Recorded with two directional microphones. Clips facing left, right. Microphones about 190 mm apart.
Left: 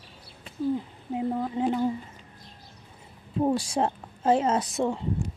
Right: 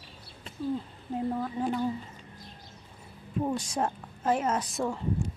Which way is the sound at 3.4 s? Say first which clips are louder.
Left 5 dB; 30° left (ahead or behind).